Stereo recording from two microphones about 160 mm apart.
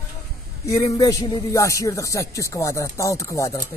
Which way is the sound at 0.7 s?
20° left (ahead or behind).